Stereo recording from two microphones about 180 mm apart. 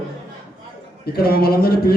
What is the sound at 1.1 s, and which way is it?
Speech, 60° left (ahead or behind).